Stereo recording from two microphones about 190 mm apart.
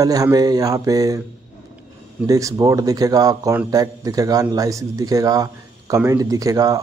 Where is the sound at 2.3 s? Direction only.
15° right (ahead or behind).